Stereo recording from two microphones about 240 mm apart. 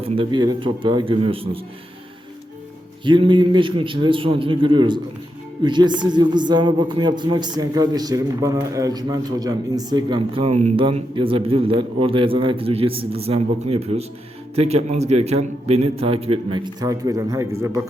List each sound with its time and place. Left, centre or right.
0.0 s a man's voice: centre
3.0 s a man's voice: centre